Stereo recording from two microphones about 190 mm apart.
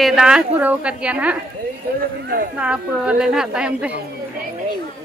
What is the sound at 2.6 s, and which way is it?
A woman's voice, 5° right (ahead or behind).